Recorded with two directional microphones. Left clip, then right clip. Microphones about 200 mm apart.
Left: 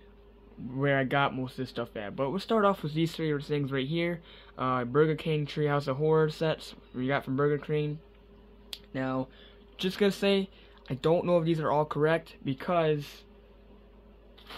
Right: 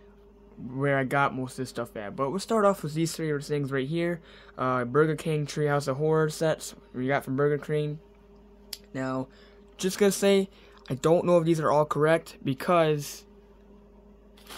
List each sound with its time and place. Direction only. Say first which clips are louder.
0.7 s speech: right 1 dB; 10° right (ahead or behind)
8.9 s speech: right 1 dB; 10° right (ahead or behind); by 13.2 s 30° right (ahead or behind)